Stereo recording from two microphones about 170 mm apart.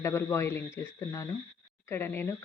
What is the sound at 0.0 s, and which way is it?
Speech, 15° left (ahead or behind).